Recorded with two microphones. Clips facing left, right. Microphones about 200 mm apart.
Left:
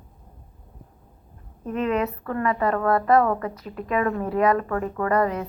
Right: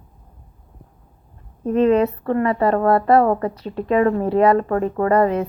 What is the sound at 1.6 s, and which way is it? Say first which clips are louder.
A woman's voice: right 8 dB; 30° right (ahead or behind).